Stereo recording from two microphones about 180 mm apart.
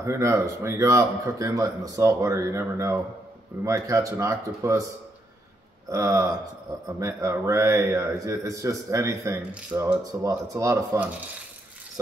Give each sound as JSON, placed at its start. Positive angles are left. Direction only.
{"t": 0.0, "sound": "speech", "side_deg": -15}
{"t": 5.9, "sound": "speech", "side_deg": -15}